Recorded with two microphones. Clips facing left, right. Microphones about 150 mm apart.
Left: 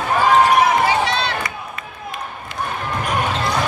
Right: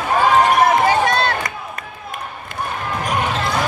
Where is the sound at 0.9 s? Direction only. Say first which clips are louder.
Right 3 dB; 50° right (ahead or behind).